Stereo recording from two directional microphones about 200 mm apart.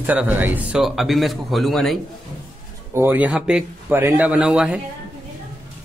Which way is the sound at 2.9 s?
10° right (ahead or behind).